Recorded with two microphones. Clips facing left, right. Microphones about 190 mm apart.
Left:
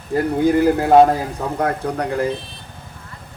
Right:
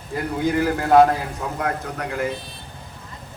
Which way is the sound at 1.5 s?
35° left (ahead or behind).